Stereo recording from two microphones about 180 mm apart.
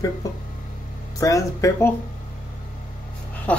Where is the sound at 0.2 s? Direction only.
20° left (ahead or behind).